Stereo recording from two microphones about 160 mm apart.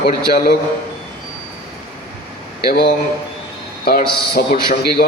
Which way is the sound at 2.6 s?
75° left (ahead or behind).